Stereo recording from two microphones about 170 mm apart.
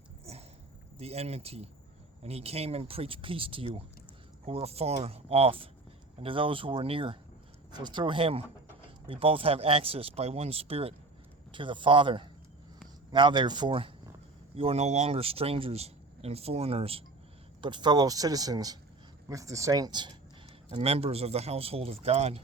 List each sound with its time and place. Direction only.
0.3 s a sound: 40° right (ahead or behind)
0.9 s speech: 35° right (ahead or behind)
20.7 s speech: 35° right (ahead or behind)